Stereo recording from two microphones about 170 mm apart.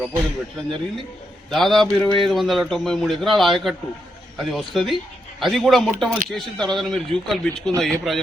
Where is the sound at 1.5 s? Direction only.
Centre (ahead or behind).